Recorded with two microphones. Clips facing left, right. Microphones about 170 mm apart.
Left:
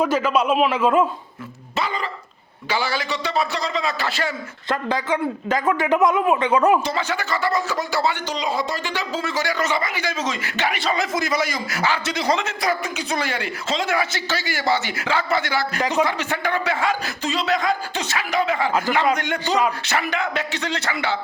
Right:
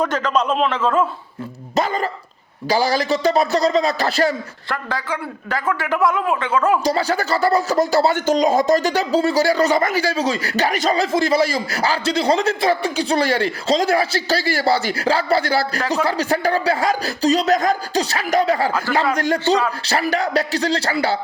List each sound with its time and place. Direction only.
0.0 s a man's voice: 5° left (ahead or behind)
1.7 s speech: 45° right (ahead or behind)
4.7 s a man's voice: 20° left (ahead or behind)
6.8 s speech: 35° right (ahead or behind)